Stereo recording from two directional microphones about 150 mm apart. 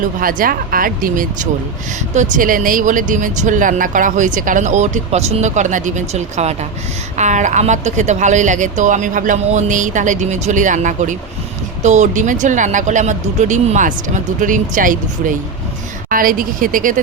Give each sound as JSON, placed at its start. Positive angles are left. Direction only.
{"t": 0.2, "sound": "speech", "side_deg": -70}
{"t": 2.1, "sound": "speech", "side_deg": -55}